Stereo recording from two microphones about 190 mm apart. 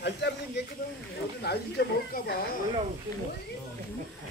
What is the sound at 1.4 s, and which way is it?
Speech, 60° left (ahead or behind).